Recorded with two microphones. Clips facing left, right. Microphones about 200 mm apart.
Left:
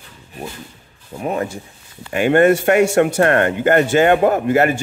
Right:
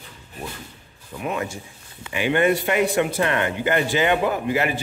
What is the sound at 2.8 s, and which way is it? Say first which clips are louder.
Speech: left 6 dB; 75° left (ahead or behind).